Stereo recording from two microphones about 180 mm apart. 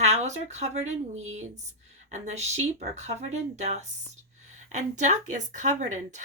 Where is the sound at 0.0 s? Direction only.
40° right (ahead or behind).